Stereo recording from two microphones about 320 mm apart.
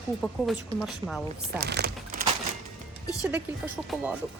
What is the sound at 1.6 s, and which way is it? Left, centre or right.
Speech, right.